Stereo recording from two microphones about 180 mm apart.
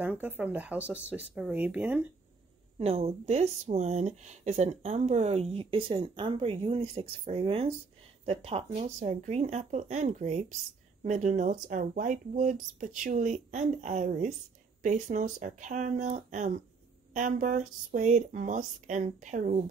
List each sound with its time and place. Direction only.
0.0 s speech: 10° right (ahead or behind)
2.8 s speech: 35° right (ahead or behind)